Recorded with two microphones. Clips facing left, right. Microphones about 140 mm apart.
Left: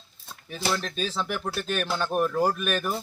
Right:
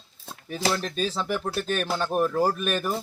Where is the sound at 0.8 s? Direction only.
5° right (ahead or behind).